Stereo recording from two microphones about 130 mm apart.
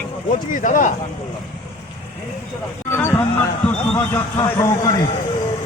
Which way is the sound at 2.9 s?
20° left (ahead or behind).